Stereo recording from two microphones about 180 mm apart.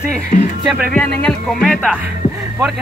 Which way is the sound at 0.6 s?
5° left (ahead or behind).